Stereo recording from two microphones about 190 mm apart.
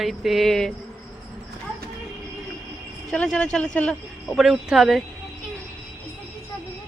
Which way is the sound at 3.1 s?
5° left (ahead or behind).